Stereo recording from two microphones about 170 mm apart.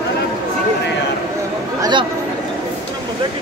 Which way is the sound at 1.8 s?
30° right (ahead or behind).